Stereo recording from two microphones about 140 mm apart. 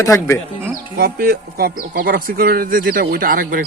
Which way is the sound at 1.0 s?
90° right.